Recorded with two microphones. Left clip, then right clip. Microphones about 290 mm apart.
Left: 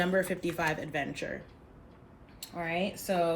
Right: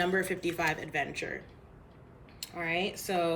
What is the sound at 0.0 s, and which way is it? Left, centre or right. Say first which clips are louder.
Speech: even; centre.